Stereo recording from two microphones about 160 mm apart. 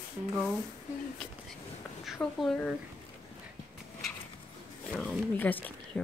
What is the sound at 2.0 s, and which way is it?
Speech, centre (ahead or behind).